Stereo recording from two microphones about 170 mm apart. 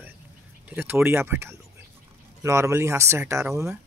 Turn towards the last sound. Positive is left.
turn(degrees=-15)  # may be behind; listen again after turning